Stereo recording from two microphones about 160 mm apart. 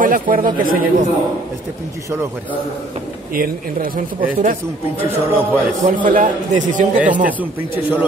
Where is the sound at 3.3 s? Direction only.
60° right (ahead or behind).